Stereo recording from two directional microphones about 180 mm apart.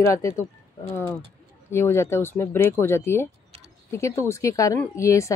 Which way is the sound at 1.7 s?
15° left (ahead or behind).